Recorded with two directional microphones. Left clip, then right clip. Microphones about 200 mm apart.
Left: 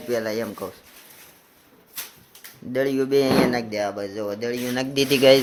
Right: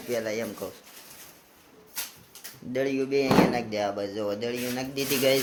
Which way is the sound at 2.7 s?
30° left (ahead or behind).